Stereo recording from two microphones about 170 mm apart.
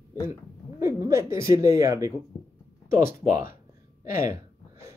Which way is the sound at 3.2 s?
55° left (ahead or behind).